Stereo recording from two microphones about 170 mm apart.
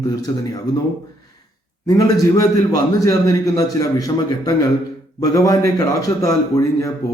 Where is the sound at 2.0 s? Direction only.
20° left (ahead or behind).